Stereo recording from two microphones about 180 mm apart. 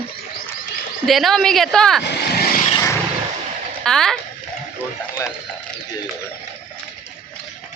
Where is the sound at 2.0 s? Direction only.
65° left (ahead or behind).